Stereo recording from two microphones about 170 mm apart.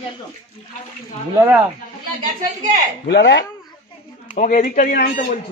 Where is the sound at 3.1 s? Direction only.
90° left.